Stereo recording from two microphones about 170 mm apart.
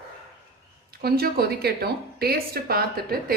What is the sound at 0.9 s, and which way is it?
Speech, 60° right (ahead or behind).